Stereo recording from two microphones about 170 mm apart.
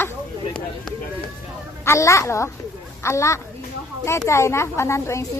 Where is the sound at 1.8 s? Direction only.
15° left (ahead or behind).